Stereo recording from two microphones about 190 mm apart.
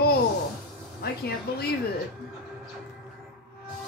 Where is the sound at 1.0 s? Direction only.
55° left (ahead or behind).